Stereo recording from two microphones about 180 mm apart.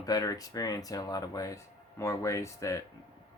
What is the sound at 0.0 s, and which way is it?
Speech, 20° left (ahead or behind).